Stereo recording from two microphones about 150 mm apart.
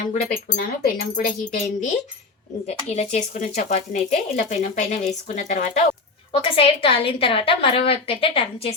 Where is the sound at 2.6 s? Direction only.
45° left (ahead or behind).